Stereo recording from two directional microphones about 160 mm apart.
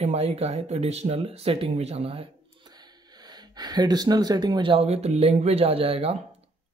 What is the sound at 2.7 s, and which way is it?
Speech, 25° right (ahead or behind).